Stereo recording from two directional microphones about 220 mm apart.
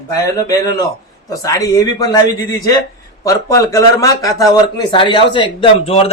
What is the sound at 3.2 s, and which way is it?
A man's voice, 15° left (ahead or behind).